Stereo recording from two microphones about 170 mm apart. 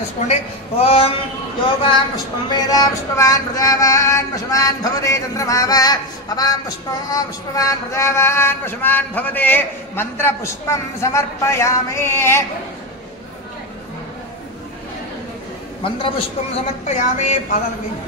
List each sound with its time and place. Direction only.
0.3 s speech: 35° left (ahead or behind)
2.5 s a sound: 20° left (ahead or behind)
16.8 s speech: 40° left (ahead or behind)